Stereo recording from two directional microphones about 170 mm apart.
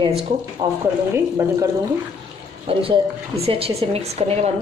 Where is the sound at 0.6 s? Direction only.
25° right (ahead or behind).